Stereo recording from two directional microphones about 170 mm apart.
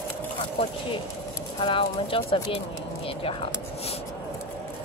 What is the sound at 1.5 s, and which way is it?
Speech, 30° left (ahead or behind).